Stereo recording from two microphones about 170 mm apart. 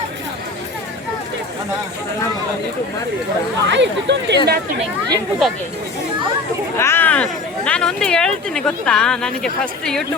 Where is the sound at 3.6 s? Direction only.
90° right.